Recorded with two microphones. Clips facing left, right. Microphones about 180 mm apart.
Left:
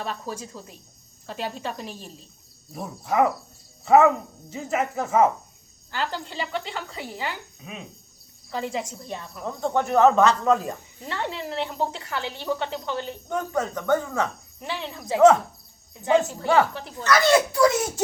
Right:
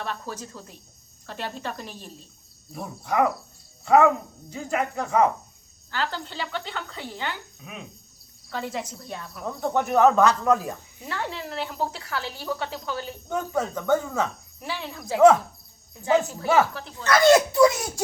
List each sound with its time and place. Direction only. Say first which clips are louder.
0.0 s speech: left 1 dB; 5° left (ahead or behind)
9.6 s speech: left 1 dB; 10° right (ahead or behind)
10.0 s speech: left 1 dB; centre (ahead or behind)
17.1 s speech: right 2 dB; 50° right (ahead or behind)